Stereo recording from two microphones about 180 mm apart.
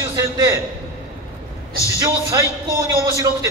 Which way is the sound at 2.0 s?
20° right (ahead or behind).